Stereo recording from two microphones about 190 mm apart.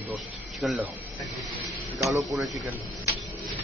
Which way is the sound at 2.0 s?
15° right (ahead or behind).